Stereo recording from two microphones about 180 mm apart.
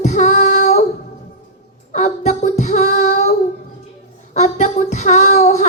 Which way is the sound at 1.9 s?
40° left (ahead or behind).